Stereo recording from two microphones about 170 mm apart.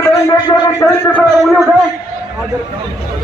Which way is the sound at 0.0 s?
20° left (ahead or behind).